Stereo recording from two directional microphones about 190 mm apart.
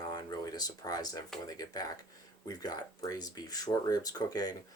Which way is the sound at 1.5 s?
20° left (ahead or behind).